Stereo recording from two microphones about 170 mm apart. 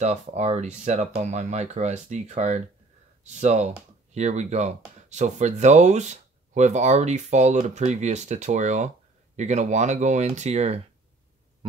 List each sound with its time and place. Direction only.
0.0 s speech: 40° right (ahead or behind)